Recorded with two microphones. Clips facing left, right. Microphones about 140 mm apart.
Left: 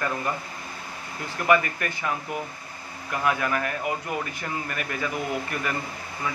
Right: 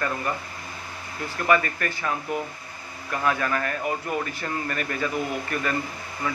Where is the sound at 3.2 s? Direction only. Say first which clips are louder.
Even; 15° left (ahead or behind).